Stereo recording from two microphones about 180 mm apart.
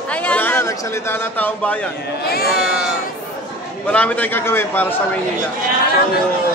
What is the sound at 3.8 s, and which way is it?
A man's voice, 5° left (ahead or behind).